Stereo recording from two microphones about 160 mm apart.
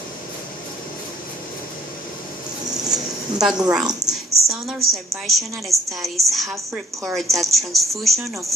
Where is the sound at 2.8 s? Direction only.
5° right (ahead or behind).